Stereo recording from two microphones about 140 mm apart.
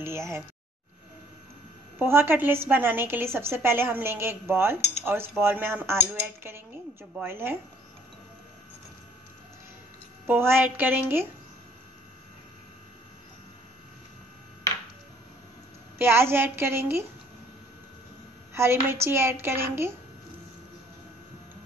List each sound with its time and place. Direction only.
0.0 s speech: 20° right (ahead or behind)
2.0 s a woman's voice: 15° right (ahead or behind)
10.2 s a woman's voice: 15° right (ahead or behind)
16.0 s a woman's voice: 15° right (ahead or behind)
18.5 s a woman's voice: 20° right (ahead or behind)